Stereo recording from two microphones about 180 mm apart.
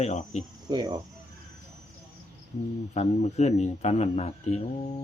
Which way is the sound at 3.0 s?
40° left (ahead or behind).